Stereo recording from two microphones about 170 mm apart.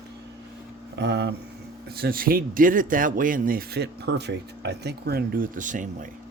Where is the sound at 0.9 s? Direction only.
90° right.